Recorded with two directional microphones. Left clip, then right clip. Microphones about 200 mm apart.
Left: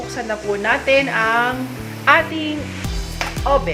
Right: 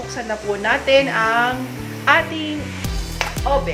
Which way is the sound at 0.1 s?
10° left (ahead or behind).